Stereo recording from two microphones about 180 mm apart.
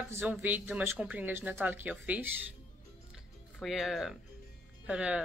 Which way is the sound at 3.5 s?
Centre (ahead or behind).